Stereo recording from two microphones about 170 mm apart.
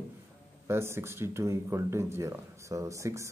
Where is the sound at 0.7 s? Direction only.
15° right (ahead or behind).